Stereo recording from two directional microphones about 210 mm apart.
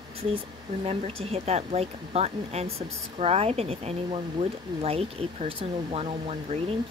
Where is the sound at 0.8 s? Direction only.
30° right (ahead or behind).